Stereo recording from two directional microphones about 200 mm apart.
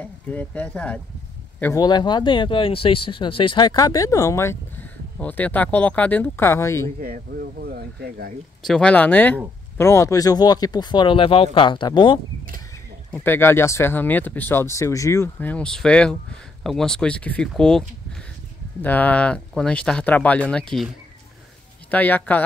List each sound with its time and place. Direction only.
0.0 s speech: 5° left (ahead or behind)
7.0 s speech: 45° right (ahead or behind)
8.6 s speech: 5° left (ahead or behind); by 12.2 s 25° left (ahead or behind)
13.1 s speech: 10° left (ahead or behind)
21.9 s speech: 10° left (ahead or behind)